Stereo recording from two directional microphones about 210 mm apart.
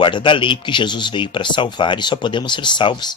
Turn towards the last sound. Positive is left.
turn(degrees=20)  # may be behind; listen again after turning